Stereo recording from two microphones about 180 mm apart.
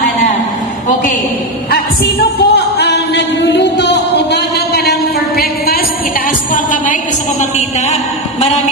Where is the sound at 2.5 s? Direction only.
65° left (ahead or behind); by 6.9 s 50° left (ahead or behind).